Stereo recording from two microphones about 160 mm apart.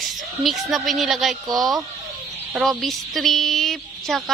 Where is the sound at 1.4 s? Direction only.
25° right (ahead or behind).